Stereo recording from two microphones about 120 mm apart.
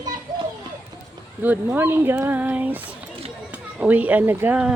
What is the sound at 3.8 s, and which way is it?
Speech, 10° right (ahead or behind).